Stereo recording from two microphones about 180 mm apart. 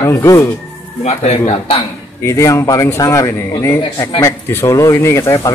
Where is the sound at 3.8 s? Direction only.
25° left (ahead or behind).